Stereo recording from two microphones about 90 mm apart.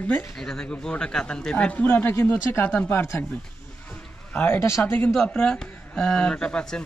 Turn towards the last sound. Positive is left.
turn(degrees=10)  # may be behind; listen again after turning